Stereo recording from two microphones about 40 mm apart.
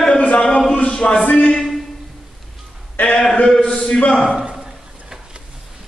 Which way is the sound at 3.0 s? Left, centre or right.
Left.